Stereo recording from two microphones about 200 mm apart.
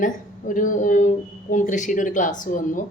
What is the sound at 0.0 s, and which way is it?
A woman's voice, 40° left (ahead or behind).